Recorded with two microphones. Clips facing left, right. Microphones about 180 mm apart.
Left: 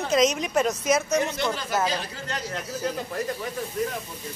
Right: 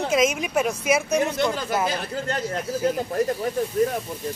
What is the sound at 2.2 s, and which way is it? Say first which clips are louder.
Speech: right 6 dB; 45° right (ahead or behind).